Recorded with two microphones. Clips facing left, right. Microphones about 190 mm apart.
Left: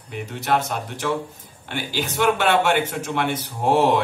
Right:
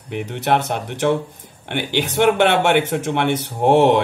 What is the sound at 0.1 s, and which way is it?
A man's voice, 65° right (ahead or behind).